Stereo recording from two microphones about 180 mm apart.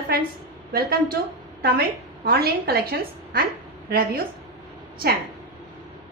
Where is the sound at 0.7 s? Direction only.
55° right (ahead or behind).